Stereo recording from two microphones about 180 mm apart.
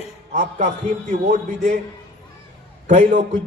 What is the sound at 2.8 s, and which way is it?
Speech, 45° right (ahead or behind).